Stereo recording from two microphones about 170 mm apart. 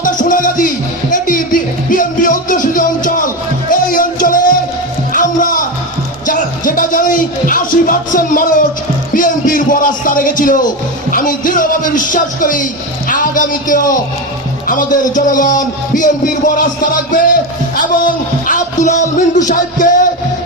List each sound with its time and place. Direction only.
0.0 s music: 50° left (ahead or behind)
11.1 s speech: 55° left (ahead or behind)
13.1 s music: 50° left (ahead or behind)
14.7 s a man's voice: 50° left (ahead or behind)